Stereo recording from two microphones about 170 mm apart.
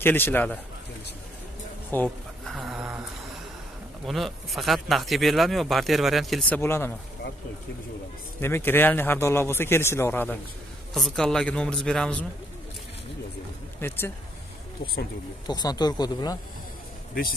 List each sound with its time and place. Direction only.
0.0 s a man's voice: 10° left (ahead or behind)
1.9 s a sound: 10° left (ahead or behind)
2.5 s a sound: centre (ahead or behind)
4.0 s speech: centre (ahead or behind)
6.6 s a man's voice: 15° left (ahead or behind)
8.4 s a man's voice: 15° left (ahead or behind)
13.7 s speech: 15° left (ahead or behind)
15.4 s speech: 25° left (ahead or behind)